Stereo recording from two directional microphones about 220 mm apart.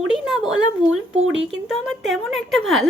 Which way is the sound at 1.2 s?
55° right (ahead or behind).